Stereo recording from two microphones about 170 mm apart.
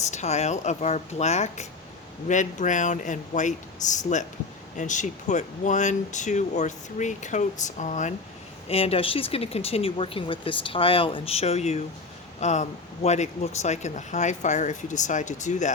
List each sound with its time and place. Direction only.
0.1 s speech: 40° left (ahead or behind)